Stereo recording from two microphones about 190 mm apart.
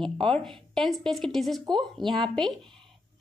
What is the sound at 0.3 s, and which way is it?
A woman's voice, centre (ahead or behind).